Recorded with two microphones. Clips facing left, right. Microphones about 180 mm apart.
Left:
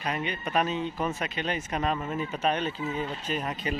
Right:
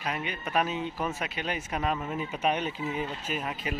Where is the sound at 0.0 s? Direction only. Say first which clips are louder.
Left 2 dB; 5° right (ahead or behind).